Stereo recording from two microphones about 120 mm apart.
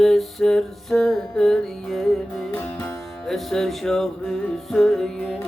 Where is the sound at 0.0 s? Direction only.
5° left (ahead or behind).